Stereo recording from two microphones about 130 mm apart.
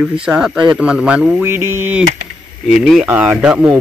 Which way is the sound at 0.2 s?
5° right (ahead or behind).